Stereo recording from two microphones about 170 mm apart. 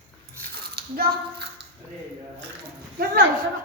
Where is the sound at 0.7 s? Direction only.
65° right (ahead or behind).